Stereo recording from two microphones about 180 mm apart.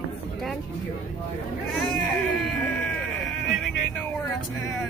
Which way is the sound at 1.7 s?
Centre (ahead or behind).